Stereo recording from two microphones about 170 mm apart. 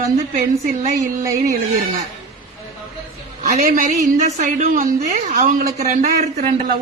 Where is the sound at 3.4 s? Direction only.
45° right (ahead or behind).